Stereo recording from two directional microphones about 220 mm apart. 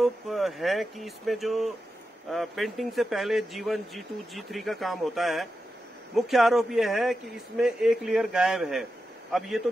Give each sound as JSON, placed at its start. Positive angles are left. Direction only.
{"t": 0.0, "sound": "speech", "side_deg": 0}